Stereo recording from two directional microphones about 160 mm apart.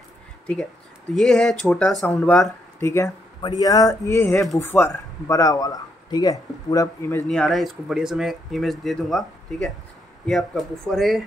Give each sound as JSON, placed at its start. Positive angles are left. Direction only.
{"t": 1.1, "sound": "speech", "side_deg": 5}
{"t": 2.8, "sound": "speech", "side_deg": 15}
{"t": 7.2, "sound": "speech", "side_deg": 0}